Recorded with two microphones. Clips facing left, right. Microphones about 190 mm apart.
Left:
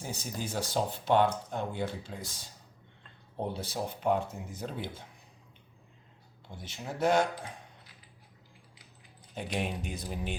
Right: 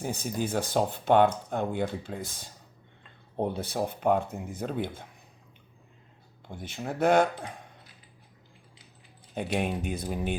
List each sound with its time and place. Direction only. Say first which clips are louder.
0.0 s speech: right 7 dB; 55° right (ahead or behind)
6.5 s speech: right 5 dB; 55° right (ahead or behind)
9.6 s speech: right 4 dB; 55° right (ahead or behind)